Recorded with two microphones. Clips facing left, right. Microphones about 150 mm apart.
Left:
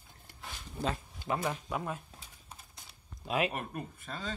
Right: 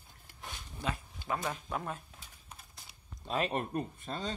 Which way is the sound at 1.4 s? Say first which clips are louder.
Left 2 dB; 10° left (ahead or behind).